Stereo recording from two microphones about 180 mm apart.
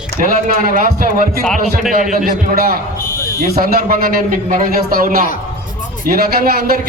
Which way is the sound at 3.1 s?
15° left (ahead or behind).